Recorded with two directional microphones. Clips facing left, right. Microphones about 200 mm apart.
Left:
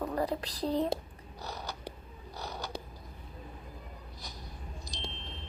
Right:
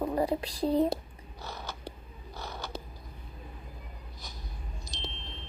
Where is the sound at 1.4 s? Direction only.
15° left (ahead or behind).